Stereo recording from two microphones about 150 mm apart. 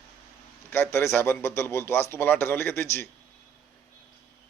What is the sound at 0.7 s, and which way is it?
A man's voice, 15° left (ahead or behind).